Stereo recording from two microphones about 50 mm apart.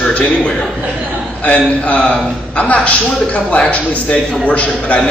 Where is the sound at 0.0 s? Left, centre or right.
Left.